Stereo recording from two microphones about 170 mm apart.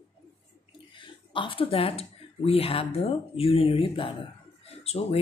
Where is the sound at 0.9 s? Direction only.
30° left (ahead or behind).